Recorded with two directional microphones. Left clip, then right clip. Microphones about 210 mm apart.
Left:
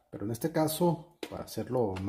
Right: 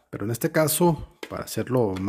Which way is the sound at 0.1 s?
50° right (ahead or behind).